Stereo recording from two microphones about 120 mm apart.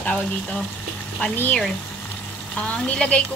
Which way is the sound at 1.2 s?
15° left (ahead or behind).